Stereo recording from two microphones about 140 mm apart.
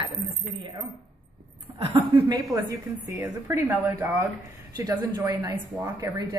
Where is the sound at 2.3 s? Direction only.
25° right (ahead or behind).